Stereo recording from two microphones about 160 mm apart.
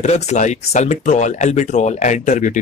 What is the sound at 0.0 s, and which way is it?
Speech, 45° left (ahead or behind).